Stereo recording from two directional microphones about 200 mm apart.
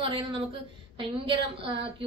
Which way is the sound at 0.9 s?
25° right (ahead or behind).